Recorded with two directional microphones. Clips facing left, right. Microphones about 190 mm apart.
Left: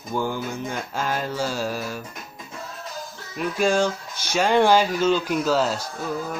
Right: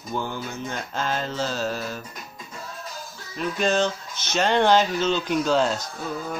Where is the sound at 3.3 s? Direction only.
10° left (ahead or behind).